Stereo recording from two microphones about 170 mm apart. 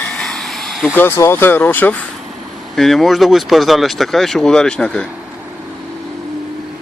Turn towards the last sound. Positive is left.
turn(degrees=5)  # may be behind; listen again after turning